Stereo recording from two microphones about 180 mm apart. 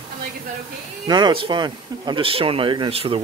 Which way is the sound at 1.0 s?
25° right (ahead or behind).